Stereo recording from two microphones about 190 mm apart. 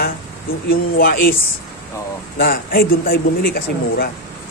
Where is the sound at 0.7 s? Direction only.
50° left (ahead or behind).